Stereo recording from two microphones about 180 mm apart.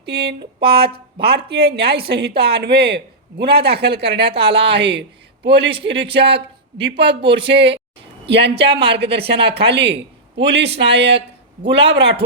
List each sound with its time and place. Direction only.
0.0 s a woman's voice: 65° right (ahead or behind); by 6.9 s 80° right
7.2 s speech: 30° right (ahead or behind)
7.4 s speech: 75° right (ahead or behind)